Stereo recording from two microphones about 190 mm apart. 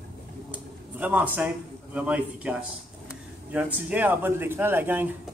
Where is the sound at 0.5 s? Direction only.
5° right (ahead or behind).